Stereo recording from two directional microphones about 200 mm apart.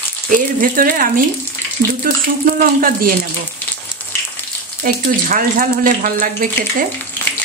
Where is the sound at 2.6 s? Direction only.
45° right (ahead or behind).